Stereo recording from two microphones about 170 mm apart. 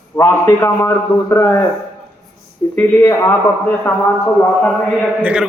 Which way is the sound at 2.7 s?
10° left (ahead or behind).